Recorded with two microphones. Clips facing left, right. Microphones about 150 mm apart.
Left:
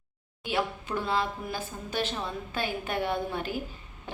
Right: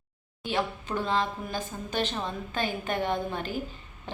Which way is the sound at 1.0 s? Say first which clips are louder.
Right 1 dB; 10° left (ahead or behind).